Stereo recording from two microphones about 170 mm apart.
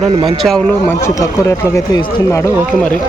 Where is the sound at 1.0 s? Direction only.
15° left (ahead or behind).